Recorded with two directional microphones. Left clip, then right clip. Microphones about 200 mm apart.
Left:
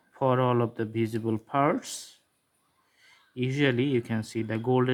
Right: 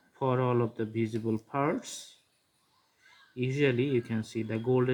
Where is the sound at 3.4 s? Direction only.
40° left (ahead or behind).